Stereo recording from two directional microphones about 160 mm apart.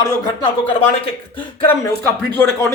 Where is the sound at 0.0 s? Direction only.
30° left (ahead or behind).